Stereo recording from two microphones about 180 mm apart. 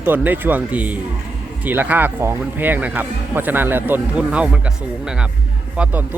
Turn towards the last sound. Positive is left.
turn(degrees=-10)  # may be behind; listen again after turning